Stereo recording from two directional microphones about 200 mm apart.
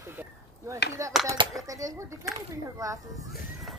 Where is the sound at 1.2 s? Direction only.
25° right (ahead or behind).